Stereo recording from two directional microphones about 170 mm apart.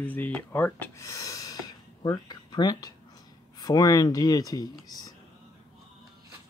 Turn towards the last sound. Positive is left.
turn(degrees=20)  # may be behind; listen again after turning